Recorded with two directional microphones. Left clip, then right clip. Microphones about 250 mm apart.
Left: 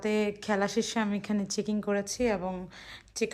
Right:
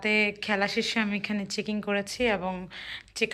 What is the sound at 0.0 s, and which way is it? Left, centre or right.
Speech, centre.